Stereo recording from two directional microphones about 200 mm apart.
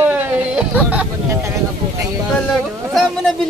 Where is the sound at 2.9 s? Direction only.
Centre (ahead or behind).